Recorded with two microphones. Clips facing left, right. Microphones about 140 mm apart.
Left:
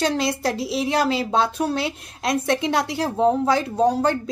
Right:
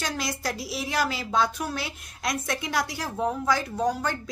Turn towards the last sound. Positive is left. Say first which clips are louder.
# left 8 dB
turn(degrees=30)  # may be behind; listen again after turning